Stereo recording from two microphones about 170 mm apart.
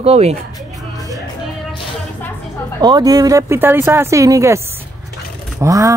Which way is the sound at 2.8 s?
25° right (ahead or behind).